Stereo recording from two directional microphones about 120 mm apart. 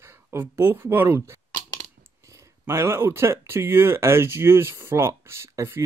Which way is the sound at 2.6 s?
20° right (ahead or behind).